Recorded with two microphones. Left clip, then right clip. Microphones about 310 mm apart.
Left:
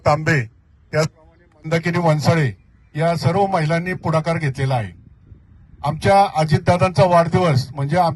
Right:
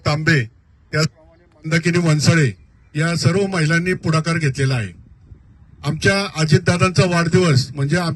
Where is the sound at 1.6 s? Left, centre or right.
Left.